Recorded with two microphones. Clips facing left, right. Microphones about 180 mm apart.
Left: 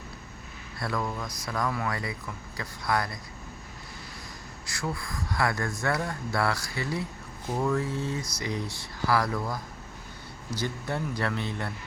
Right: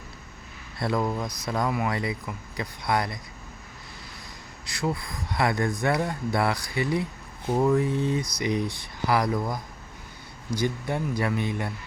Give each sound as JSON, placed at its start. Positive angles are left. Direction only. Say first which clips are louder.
{"t": 0.8, "sound": "speech", "louder": "right 5 dB", "side_deg": -25}
{"t": 4.6, "sound": "speech", "louder": "right 5 dB", "side_deg": -20}